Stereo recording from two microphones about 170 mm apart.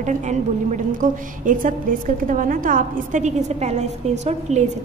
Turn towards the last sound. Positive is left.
turn(degrees=-40)  # may be behind; listen again after turning